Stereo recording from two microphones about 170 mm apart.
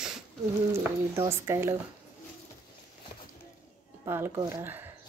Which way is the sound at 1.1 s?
15° right (ahead or behind).